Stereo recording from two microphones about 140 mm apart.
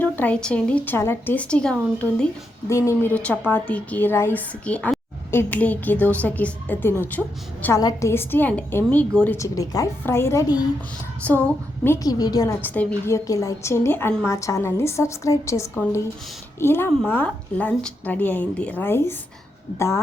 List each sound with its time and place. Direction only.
0.0 s a woman's voice: 10° left (ahead or behind)
2.6 s a woman's voice: 20° left (ahead or behind)
7.8 s a woman's voice: 25° left (ahead or behind)
8.1 s a woman's voice: 15° left (ahead or behind)
9.4 s a woman's voice: 25° left (ahead or behind)
11.4 s a woman's voice: 15° left (ahead or behind)
12.0 s a woman's voice: 25° left (ahead or behind)